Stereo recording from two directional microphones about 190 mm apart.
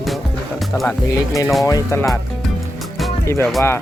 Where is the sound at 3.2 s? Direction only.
10° left (ahead or behind).